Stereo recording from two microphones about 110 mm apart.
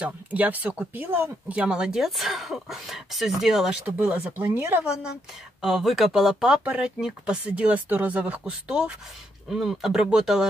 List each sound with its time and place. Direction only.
0.0 s speech: 15° right (ahead or behind)
3.8 s speech: 15° right (ahead or behind)
5.6 s speech: 5° right (ahead or behind)